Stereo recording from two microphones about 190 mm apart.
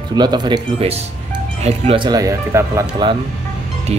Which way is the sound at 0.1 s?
20° right (ahead or behind).